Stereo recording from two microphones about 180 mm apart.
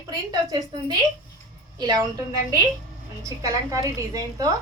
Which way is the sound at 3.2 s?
20° right (ahead or behind).